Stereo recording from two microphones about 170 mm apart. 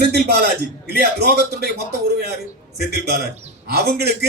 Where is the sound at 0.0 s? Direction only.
70° right (ahead or behind).